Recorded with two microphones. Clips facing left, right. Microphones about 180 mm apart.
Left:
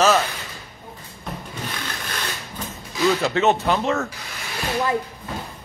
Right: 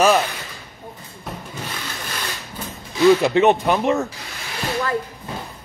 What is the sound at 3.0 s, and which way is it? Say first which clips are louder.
Speech: right 6 dB; 20° right (ahead or behind).